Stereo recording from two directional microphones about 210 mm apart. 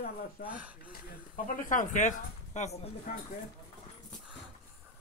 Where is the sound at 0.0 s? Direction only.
45° left (ahead or behind).